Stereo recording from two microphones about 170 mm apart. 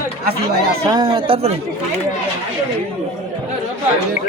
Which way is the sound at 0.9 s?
25° right (ahead or behind).